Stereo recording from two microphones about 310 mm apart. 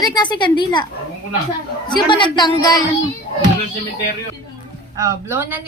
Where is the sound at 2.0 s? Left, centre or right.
Centre.